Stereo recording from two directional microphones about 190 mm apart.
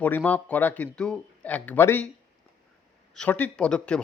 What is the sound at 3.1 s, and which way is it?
Speech, 5° left (ahead or behind).